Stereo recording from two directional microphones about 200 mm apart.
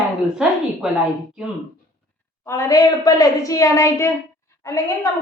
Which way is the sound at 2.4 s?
15° left (ahead or behind).